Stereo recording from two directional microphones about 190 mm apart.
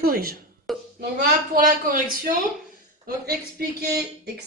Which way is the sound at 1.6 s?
45° right (ahead or behind).